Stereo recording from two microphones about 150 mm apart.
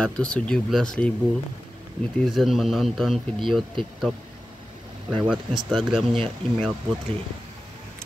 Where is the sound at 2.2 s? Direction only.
Centre (ahead or behind).